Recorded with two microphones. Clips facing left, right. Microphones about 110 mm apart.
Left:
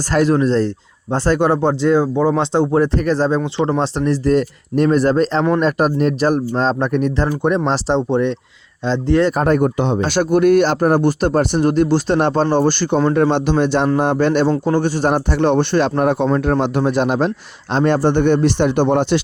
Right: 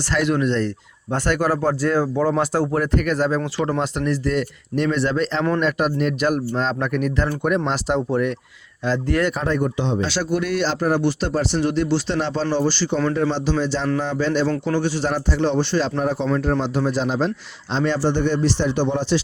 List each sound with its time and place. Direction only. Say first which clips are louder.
0.1 s speech: left 5 dB; 40° left (ahead or behind)
9.3 s speech: left 7 dB; 55° left (ahead or behind)